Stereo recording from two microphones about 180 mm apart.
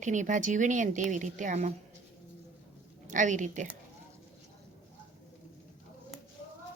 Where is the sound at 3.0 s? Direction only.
45° right (ahead or behind).